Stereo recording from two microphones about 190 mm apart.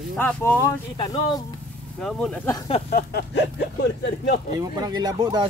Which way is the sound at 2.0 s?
5° left (ahead or behind).